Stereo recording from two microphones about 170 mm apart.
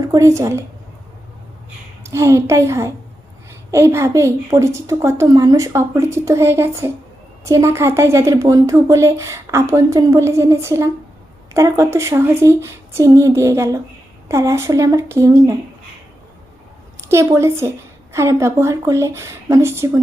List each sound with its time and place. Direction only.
0.0 s a woman's voice: 20° right (ahead or behind)
2.0 s speech: 15° right (ahead or behind)
17.1 s speech: 15° right (ahead or behind)